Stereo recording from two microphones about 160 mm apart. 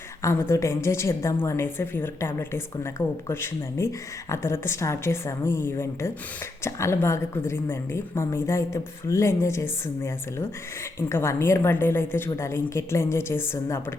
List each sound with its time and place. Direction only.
0.2 s a woman's voice: 15° left (ahead or behind)